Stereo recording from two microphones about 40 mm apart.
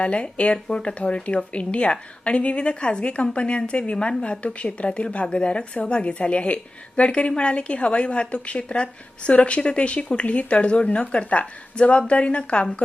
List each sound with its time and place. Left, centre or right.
0.0 s a woman's voice: left